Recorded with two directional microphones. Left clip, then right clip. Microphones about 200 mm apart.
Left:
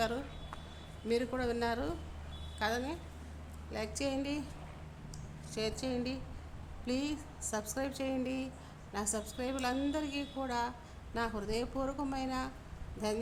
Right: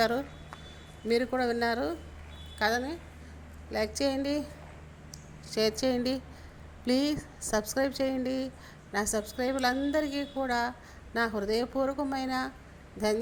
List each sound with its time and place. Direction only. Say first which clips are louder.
1.0 s a woman's voice: right 6 dB; 20° right (ahead or behind)